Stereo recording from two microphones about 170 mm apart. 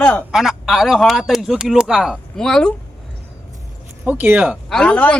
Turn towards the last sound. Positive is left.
turn(degrees=5)  # may be behind; listen again after turning